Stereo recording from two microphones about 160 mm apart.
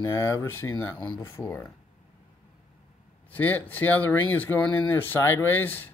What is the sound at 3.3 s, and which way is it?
Speech, 10° left (ahead or behind).